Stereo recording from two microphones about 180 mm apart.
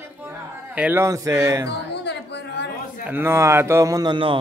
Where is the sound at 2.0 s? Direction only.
70° left (ahead or behind).